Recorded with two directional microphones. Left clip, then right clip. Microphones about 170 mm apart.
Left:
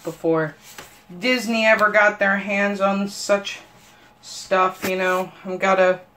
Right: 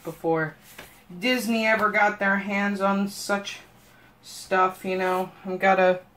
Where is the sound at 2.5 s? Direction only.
45° left (ahead or behind).